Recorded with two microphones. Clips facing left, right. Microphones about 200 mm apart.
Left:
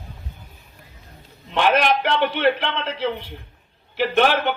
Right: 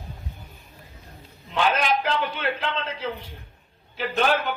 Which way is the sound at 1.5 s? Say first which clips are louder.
Left 4 dB; 70° left (ahead or behind).